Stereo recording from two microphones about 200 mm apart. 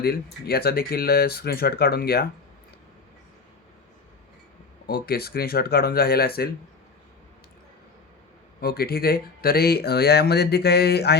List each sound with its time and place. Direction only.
0.0 s speech: 50° left (ahead or behind)
4.9 s speech: 50° left (ahead or behind)
8.6 s speech: 50° left (ahead or behind)